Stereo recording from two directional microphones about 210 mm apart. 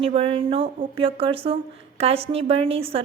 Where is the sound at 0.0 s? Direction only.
25° right (ahead or behind).